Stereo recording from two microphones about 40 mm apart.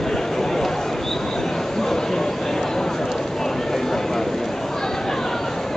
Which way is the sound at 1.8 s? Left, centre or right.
Centre.